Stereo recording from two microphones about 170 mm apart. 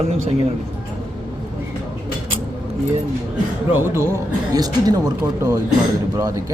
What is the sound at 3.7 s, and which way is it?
Speech, 15° right (ahead or behind).